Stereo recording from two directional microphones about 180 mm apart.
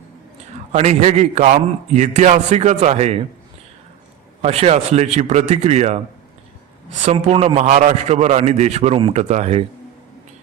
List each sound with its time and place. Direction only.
0.7 s a man's voice: 40° right (ahead or behind)
4.4 s a man's voice: 35° right (ahead or behind)
7.0 s a man's voice: 35° right (ahead or behind)